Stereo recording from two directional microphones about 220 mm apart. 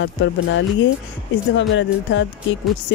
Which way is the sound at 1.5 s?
55° left (ahead or behind).